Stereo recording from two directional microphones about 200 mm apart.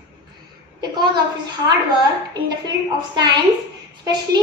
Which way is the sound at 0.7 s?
20° right (ahead or behind).